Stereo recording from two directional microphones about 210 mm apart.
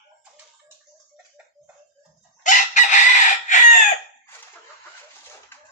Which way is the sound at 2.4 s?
35° left (ahead or behind).